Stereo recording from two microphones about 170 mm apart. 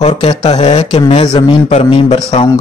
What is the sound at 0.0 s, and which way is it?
Speech, 35° left (ahead or behind).